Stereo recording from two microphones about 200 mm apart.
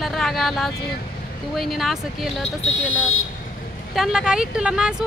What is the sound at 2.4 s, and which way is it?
Speech, 70° left (ahead or behind).